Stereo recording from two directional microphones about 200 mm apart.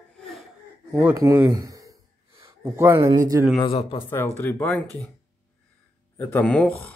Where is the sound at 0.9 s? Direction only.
15° right (ahead or behind).